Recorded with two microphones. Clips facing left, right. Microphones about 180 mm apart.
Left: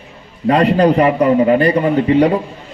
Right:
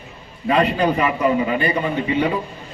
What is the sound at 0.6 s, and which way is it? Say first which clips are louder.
A man's voice: left 6 dB; 65° left (ahead or behind).